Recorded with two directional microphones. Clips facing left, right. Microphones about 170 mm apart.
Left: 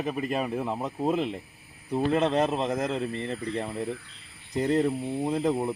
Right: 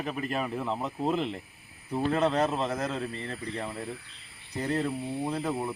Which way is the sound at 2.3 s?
15° left (ahead or behind).